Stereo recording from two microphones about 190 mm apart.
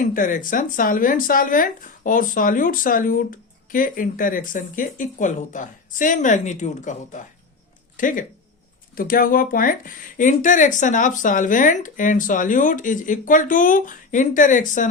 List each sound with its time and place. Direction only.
0.0 s speech: 45° left (ahead or behind)